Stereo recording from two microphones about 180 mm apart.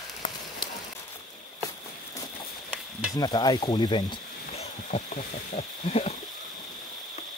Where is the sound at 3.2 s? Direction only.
25° left (ahead or behind).